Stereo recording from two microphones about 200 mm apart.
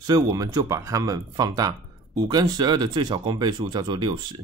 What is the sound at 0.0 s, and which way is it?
Speech, 20° right (ahead or behind).